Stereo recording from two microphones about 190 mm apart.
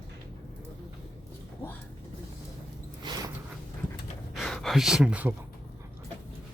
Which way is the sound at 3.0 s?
20° right (ahead or behind).